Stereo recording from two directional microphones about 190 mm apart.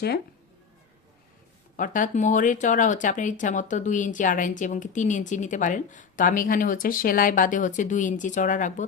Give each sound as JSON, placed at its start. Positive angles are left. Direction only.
{"t": 1.7, "sound": "speech", "side_deg": 45}